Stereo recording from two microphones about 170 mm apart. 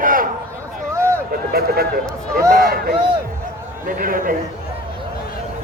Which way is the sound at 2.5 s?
60° right (ahead or behind).